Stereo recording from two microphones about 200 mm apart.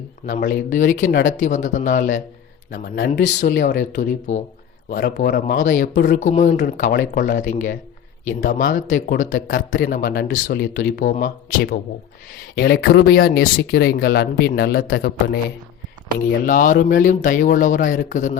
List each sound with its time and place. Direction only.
0.3 s a man's voice: 45° left (ahead or behind)